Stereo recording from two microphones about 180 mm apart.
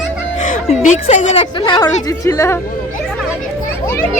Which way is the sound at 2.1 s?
15° left (ahead or behind).